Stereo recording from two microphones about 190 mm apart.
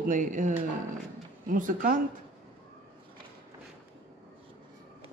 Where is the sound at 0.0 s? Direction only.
40° right (ahead or behind).